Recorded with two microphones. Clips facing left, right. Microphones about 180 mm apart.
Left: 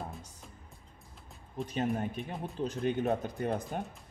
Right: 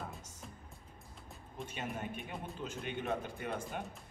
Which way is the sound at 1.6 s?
35° left (ahead or behind).